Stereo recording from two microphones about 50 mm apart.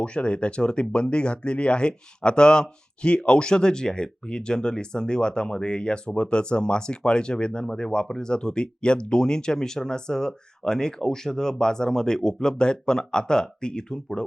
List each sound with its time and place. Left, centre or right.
0.0 s speech: left